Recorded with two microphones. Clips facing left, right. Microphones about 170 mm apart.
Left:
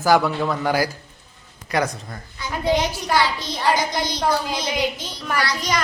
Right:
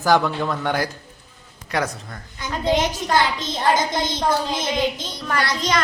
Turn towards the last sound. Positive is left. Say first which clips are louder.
# right 1 dB
turn(degrees=-20)  # may be behind; listen again after turning